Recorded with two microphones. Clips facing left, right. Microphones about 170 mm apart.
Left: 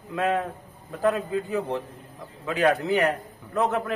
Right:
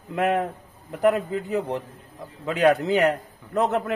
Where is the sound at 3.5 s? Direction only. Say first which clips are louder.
Right 2 dB; 20° right (ahead or behind).